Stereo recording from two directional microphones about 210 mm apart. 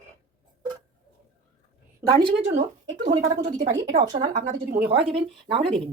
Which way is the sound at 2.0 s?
20° right (ahead or behind).